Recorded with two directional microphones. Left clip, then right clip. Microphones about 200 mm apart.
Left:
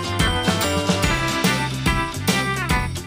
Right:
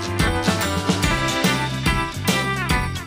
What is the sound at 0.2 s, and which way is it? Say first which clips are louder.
Music: even; centre (ahead or behind).